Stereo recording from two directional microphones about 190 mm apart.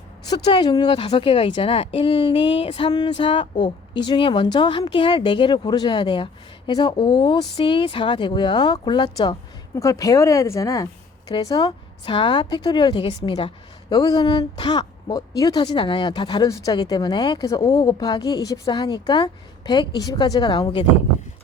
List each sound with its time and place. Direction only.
0.3 s speech: 20° left (ahead or behind)